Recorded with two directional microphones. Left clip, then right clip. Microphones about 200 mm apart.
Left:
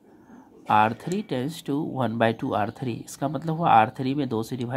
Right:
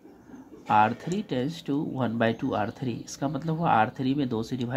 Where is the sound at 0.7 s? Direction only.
25° left (ahead or behind).